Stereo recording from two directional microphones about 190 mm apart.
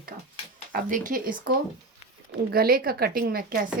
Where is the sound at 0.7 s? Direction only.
45° right (ahead or behind).